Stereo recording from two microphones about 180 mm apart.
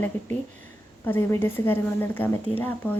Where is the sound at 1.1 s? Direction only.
15° left (ahead or behind).